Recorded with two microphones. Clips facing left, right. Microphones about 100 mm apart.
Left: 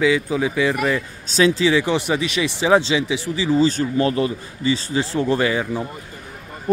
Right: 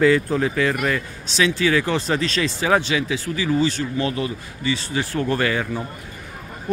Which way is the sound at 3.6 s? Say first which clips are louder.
Left 4 dB; 35° left (ahead or behind).